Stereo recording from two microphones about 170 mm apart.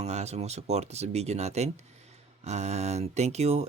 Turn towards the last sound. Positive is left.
turn(degrees=-40)  # may be behind; listen again after turning